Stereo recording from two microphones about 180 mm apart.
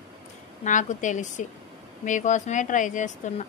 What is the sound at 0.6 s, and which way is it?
Speech, 45° left (ahead or behind).